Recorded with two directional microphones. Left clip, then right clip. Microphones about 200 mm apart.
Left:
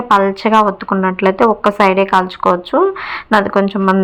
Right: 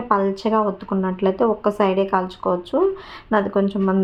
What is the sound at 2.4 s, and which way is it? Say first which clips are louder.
Speech: left 8 dB; 30° left (ahead or behind).